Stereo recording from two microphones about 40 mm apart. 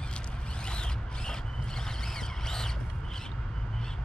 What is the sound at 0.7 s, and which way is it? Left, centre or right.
Zipper, left.